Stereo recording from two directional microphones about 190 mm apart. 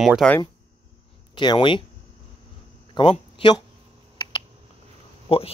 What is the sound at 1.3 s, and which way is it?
Speech, 25° left (ahead or behind).